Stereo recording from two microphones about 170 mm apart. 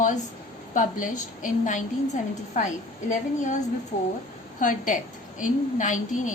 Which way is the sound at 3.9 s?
50° left (ahead or behind).